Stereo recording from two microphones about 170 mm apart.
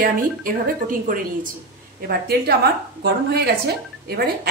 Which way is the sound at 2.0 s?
65° right (ahead or behind).